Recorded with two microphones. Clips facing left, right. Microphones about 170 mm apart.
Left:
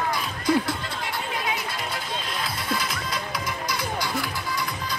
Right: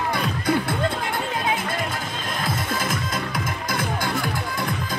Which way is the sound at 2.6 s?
50° right (ahead or behind).